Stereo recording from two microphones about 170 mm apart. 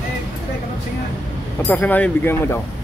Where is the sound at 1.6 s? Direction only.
10° left (ahead or behind).